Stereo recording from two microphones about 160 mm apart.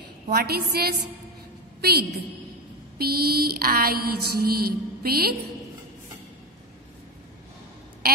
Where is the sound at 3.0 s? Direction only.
75° right (ahead or behind).